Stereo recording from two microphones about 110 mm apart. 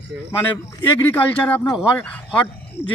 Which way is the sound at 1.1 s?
15° left (ahead or behind).